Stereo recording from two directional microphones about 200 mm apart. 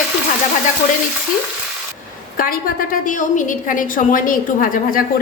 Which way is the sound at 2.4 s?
45° left (ahead or behind).